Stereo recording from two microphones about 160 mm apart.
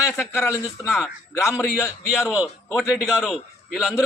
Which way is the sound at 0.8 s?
5° right (ahead or behind).